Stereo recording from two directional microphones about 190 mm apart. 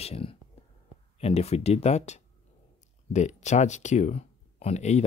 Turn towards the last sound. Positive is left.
turn(degrees=35)  # may be behind; listen again after turning